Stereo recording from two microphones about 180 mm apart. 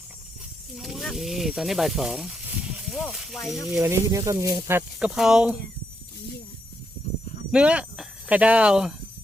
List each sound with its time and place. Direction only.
0.8 s speech: centre (ahead or behind)
3.8 s speech: 15° right (ahead or behind)
4.9 s speech: 5° right (ahead or behind)
7.5 s speech: 5° right (ahead or behind)